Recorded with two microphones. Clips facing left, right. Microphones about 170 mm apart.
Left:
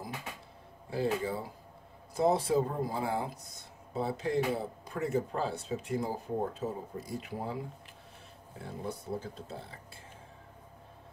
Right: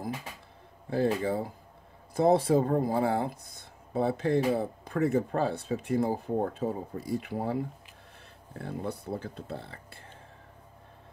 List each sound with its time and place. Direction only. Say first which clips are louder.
0.8 s speech: right 4 dB; 55° right (ahead or behind)